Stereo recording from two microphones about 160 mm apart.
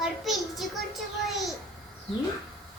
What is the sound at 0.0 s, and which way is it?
Child singing, centre (ahead or behind).